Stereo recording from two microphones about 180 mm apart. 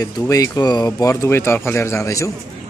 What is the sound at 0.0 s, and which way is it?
Speech, 20° left (ahead or behind).